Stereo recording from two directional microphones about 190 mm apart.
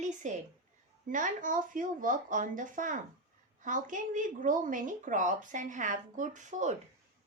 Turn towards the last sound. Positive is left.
turn(degrees=-40)  # may be behind; listen again after turning